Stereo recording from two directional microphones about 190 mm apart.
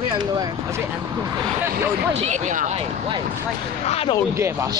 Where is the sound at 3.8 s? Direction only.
30° left (ahead or behind).